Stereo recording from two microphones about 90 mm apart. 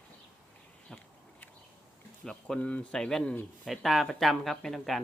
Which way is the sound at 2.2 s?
10° left (ahead or behind).